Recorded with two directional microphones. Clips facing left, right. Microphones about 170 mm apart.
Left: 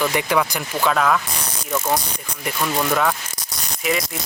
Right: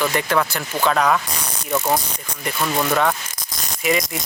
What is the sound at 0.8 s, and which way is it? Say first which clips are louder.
Speech: right 1 dB; centre (ahead or behind).